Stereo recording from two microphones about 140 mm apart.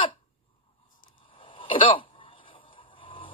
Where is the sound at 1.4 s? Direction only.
40° left (ahead or behind).